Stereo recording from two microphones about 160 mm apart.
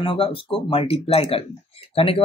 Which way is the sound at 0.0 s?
35° left (ahead or behind).